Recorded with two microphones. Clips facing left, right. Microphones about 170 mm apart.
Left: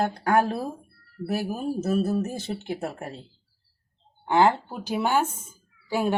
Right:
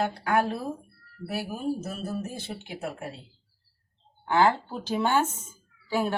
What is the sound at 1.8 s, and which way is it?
Speech, 45° left (ahead or behind).